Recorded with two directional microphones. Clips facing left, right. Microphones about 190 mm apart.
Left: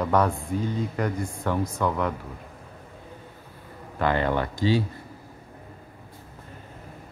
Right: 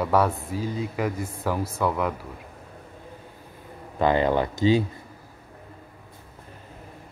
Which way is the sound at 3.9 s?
20° right (ahead or behind).